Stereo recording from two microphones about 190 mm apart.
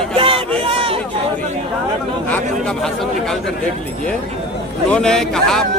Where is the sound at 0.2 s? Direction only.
30° right (ahead or behind).